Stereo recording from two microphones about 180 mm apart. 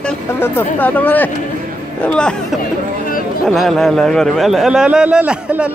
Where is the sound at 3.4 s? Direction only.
Centre (ahead or behind).